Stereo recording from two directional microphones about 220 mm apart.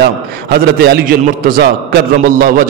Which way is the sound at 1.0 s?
45° right (ahead or behind).